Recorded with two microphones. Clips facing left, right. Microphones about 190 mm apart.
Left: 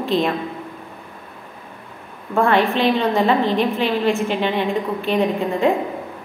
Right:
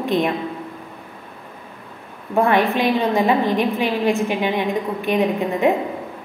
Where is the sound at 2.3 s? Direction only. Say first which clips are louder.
Even; 15° right (ahead or behind).